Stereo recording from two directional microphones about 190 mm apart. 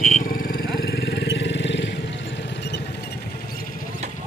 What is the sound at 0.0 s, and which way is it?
Vehicle, 45° left (ahead or behind).